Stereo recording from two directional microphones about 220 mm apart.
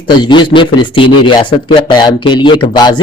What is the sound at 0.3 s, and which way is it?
Speech, 20° left (ahead or behind).